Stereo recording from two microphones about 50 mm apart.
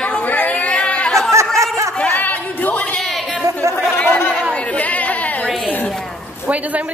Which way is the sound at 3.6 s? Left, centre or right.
Right.